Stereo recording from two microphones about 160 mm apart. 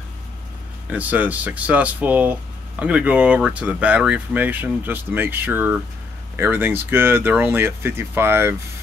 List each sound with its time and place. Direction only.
0.9 s speech: 10° right (ahead or behind)